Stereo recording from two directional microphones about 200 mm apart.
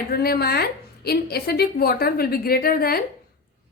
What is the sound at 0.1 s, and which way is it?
A woman's voice, 50° left (ahead or behind).